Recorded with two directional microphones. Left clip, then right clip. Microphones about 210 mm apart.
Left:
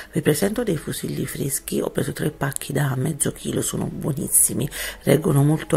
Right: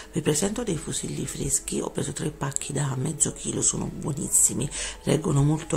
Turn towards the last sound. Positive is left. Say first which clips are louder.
# left 5 dB
turn(degrees=15)  # may be behind; listen again after turning